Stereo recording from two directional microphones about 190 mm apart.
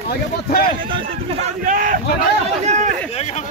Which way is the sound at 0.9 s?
40° right (ahead or behind).